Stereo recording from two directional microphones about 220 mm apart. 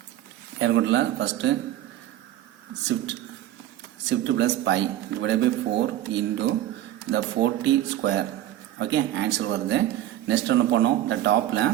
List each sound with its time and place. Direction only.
0.6 s speech: 55° right (ahead or behind)
4.1 s a man's voice: 55° right (ahead or behind)